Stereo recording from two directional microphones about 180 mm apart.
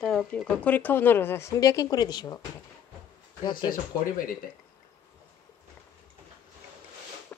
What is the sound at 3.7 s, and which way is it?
Speech, 50° left (ahead or behind).